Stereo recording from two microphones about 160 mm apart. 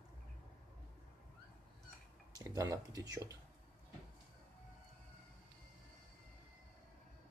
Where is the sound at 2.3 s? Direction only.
20° right (ahead or behind).